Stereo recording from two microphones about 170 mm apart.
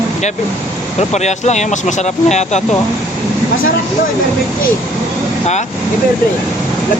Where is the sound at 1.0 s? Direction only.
40° left (ahead or behind).